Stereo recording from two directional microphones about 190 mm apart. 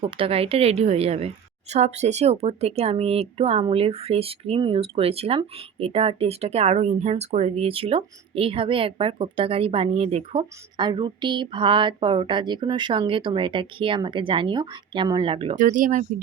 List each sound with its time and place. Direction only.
0.0 s a woman's voice: 30° right (ahead or behind)
15.5 s speech: 45° right (ahead or behind)